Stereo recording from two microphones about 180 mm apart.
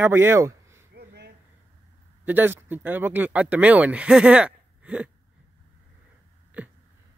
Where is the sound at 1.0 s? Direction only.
65° right (ahead or behind).